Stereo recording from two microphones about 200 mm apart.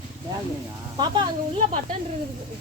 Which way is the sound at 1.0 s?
20° right (ahead or behind).